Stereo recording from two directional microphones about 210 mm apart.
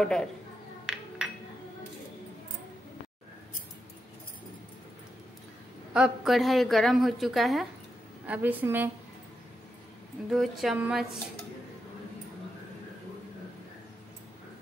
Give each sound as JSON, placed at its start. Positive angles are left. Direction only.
{"t": 0.0, "sound": "a woman's voice", "side_deg": 5}
{"t": 0.8, "sound": "a sound", "side_deg": -5}
{"t": 5.9, "sound": "a woman's voice", "side_deg": 0}
{"t": 10.3, "sound": "a woman's voice", "side_deg": 0}